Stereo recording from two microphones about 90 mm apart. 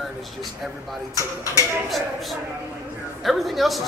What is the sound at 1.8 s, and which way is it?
A man's voice, centre (ahead or behind).